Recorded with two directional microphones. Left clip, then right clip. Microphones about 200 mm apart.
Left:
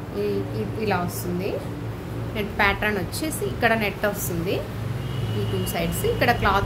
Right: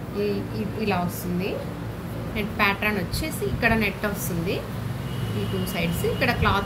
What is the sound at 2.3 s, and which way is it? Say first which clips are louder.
A woman's voice: left 1 dB; 40° left (ahead or behind).